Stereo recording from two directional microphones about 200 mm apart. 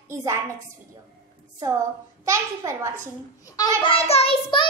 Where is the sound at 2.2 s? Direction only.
15° right (ahead or behind).